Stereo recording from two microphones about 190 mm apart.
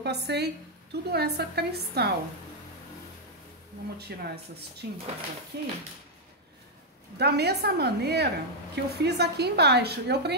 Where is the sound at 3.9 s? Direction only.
60° right (ahead or behind).